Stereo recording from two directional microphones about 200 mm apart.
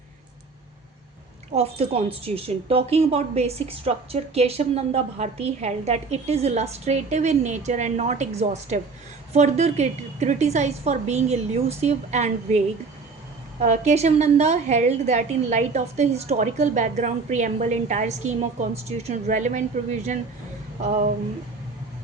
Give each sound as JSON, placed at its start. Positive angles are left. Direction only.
{"t": 1.5, "sound": "speech", "side_deg": -30}